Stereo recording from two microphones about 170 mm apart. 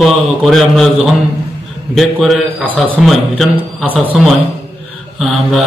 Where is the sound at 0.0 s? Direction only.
Centre (ahead or behind).